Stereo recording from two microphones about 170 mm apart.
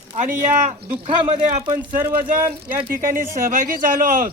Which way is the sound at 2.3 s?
55° right (ahead or behind).